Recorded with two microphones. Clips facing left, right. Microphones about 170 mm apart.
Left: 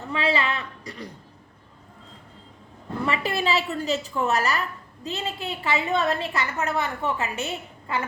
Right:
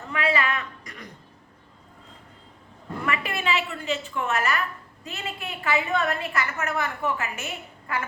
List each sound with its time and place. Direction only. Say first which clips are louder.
0.1 s a woman's voice: left 1 dB; 30° left (ahead or behind)
3.1 s a woman's voice: left 2 dB; 35° left (ahead or behind)